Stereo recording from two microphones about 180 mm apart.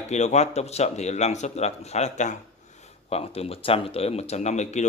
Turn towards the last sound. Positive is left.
turn(degrees=40)  # may be behind; listen again after turning